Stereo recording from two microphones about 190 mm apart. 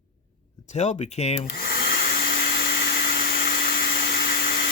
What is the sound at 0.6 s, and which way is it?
Speech, 35° left (ahead or behind).